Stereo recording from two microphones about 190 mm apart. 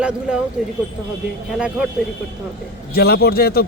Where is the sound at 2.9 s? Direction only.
55° left (ahead or behind).